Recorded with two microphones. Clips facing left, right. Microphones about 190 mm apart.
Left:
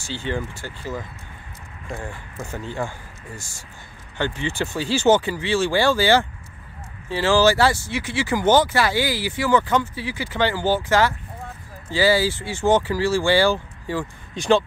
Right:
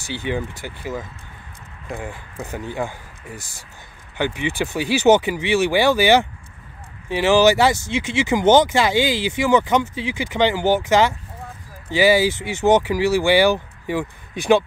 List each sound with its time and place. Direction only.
0.0 s speech: 15° right (ahead or behind)
4.2 s speech: 15° right (ahead or behind)